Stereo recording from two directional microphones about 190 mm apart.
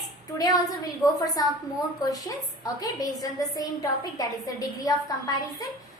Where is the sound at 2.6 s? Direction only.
20° left (ahead or behind).